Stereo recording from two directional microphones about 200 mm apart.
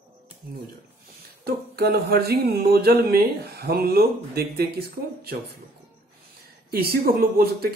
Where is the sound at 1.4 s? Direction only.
50° right (ahead or behind).